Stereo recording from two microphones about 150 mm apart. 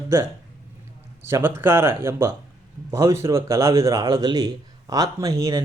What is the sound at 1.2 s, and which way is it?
Speech, 15° right (ahead or behind).